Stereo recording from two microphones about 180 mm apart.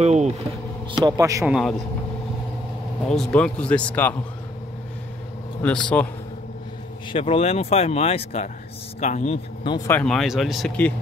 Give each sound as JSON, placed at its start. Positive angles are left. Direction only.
{"t": 0.0, "sound": "vehicle", "side_deg": -40}
{"t": 0.9, "sound": "a man's voice", "side_deg": -20}
{"t": 1.5, "sound": "speech", "side_deg": 0}
{"t": 3.1, "sound": "a man's voice", "side_deg": 5}
{"t": 5.6, "sound": "a man's voice", "side_deg": 5}
{"t": 7.1, "sound": "speech", "side_deg": 30}
{"t": 9.7, "sound": "speech", "side_deg": 20}
{"t": 9.9, "sound": "speech", "side_deg": 5}